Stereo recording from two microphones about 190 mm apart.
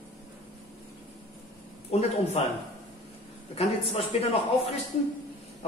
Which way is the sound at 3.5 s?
35° left (ahead or behind).